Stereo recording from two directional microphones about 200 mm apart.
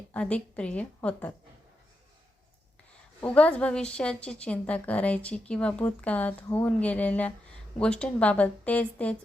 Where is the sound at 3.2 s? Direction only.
5° left (ahead or behind).